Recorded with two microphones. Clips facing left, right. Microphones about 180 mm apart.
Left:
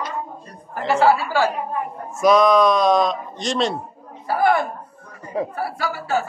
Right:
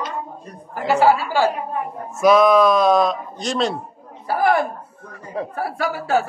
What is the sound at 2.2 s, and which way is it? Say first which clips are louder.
Speech: right 1 dB; 5° right (ahead or behind).